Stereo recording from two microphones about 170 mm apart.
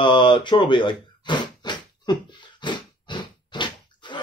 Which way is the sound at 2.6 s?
25° left (ahead or behind).